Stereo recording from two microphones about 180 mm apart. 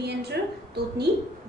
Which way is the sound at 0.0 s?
65° right (ahead or behind).